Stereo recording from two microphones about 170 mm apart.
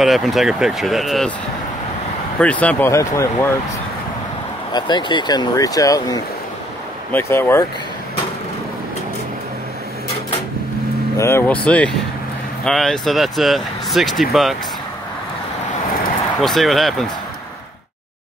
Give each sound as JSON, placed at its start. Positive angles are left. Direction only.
{"t": 0.0, "sound": "speech", "side_deg": 0}
{"t": 2.4, "sound": "speech", "side_deg": 10}
{"t": 4.7, "sound": "speech", "side_deg": 25}
{"t": 11.1, "sound": "speech", "side_deg": 15}
{"t": 16.3, "sound": "speech", "side_deg": 0}